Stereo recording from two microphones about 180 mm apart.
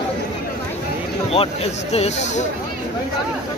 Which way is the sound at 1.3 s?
35° left (ahead or behind).